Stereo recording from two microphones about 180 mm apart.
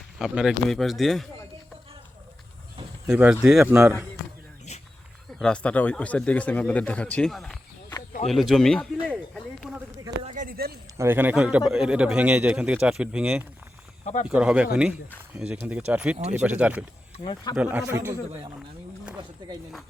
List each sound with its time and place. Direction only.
0.2 s a man's voice: 5° right (ahead or behind)
3.1 s a man's voice: 5° right (ahead or behind)
4.7 s a sound: 40° left (ahead or behind)
5.3 s a man's voice: 5° left (ahead or behind)
9.0 s a sound: centre (ahead or behind)
10.2 s a sound: 45° right (ahead or behind)
10.9 s a man's voice: 15° right (ahead or behind)
14.0 s speech: 40° left (ahead or behind)
14.3 s a man's voice: 5° right (ahead or behind)
19.4 s speech: 25° right (ahead or behind)